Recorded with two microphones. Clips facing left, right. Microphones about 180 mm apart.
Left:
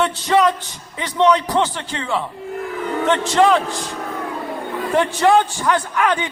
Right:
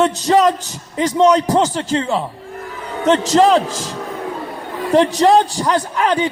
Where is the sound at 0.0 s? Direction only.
40° right (ahead or behind).